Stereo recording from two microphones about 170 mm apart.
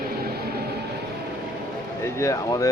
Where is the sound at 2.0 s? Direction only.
15° left (ahead or behind).